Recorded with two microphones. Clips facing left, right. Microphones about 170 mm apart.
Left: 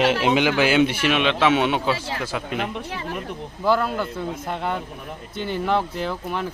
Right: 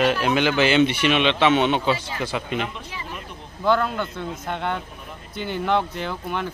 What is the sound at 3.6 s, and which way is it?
Speech, 5° left (ahead or behind).